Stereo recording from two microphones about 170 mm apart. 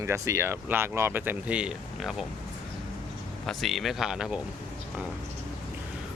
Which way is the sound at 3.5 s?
Centre (ahead or behind).